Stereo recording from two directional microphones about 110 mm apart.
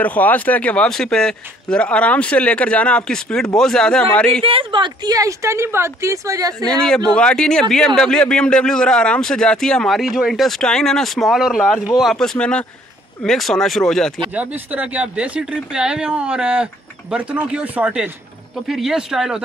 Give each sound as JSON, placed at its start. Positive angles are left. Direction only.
{"t": 0.0, "sound": "a man's voice", "side_deg": 15}
{"t": 4.4, "sound": "speech", "side_deg": -55}
{"t": 6.6, "sound": "a man's voice", "side_deg": 5}
{"t": 14.3, "sound": "a man's voice", "side_deg": -15}